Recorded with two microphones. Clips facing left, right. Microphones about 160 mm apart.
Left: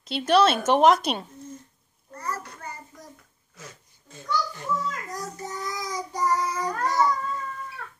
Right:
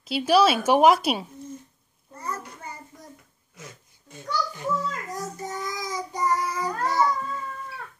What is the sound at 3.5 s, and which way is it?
A child's voice, 15° right (ahead or behind).